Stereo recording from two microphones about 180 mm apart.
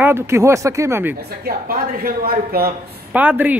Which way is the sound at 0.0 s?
15° right (ahead or behind).